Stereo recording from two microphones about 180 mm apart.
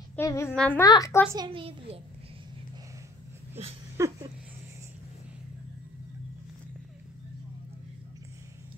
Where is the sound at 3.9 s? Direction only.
15° right (ahead or behind).